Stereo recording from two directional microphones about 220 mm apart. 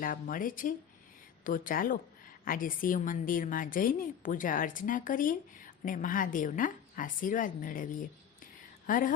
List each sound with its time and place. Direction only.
0.0 s a woman's voice: 40° left (ahead or behind)